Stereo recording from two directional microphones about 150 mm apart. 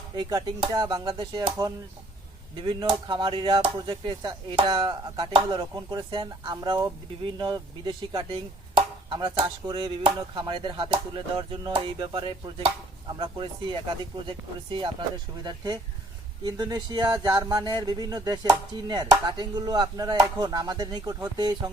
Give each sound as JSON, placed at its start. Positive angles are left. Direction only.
{"t": 0.2, "sound": "speech", "side_deg": -25}